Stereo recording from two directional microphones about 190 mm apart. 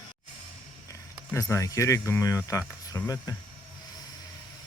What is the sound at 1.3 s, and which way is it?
Speech, 15° left (ahead or behind).